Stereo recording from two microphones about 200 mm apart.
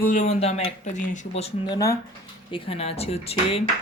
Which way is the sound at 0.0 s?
40° left (ahead or behind).